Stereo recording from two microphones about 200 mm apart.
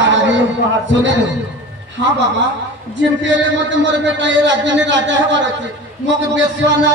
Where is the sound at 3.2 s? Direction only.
65° right (ahead or behind).